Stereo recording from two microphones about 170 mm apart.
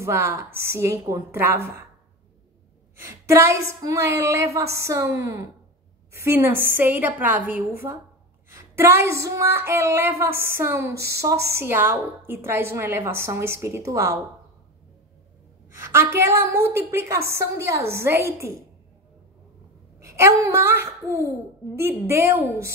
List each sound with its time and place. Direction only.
0.0 s a woman's voice: 15° right (ahead or behind)
3.0 s a woman's voice: 15° right (ahead or behind)
15.8 s a woman's voice: 15° right (ahead or behind)
20.0 s a woman's voice: 15° right (ahead or behind)